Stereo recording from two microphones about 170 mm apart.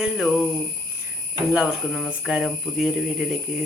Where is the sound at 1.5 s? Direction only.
5° right (ahead or behind).